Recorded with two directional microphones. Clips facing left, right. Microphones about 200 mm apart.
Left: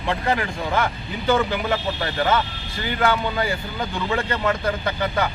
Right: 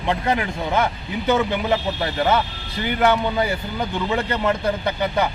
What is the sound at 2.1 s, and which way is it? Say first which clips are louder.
A man's voice: right 1 dB; 20° right (ahead or behind).